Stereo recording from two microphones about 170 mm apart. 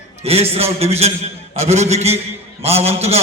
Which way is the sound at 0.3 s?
35° right (ahead or behind).